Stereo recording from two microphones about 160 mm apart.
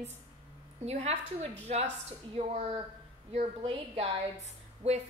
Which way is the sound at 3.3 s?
40° right (ahead or behind).